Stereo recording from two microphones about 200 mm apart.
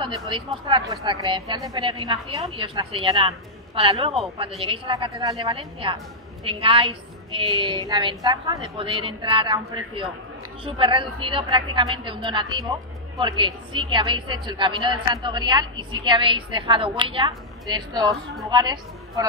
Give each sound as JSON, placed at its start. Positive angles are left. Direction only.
{"t": 0.0, "sound": "a woman's voice", "side_deg": -25}
{"t": 4.2, "sound": "speech", "side_deg": 0}
{"t": 4.6, "sound": "a woman's voice", "side_deg": -25}
{"t": 13.7, "sound": "a woman's voice", "side_deg": -25}